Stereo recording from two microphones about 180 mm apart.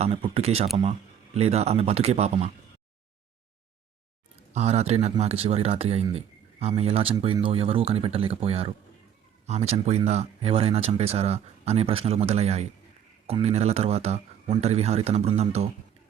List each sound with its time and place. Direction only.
0.0 s speech: 35° right (ahead or behind)
4.5 s speech: 35° right (ahead or behind)